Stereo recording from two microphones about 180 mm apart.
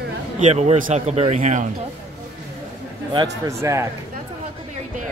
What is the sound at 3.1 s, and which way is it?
Speech, 20° right (ahead or behind).